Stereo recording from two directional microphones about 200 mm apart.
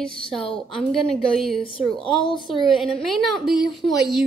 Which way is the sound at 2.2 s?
25° left (ahead or behind).